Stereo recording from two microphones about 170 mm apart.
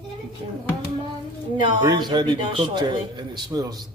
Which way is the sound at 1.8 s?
25° right (ahead or behind).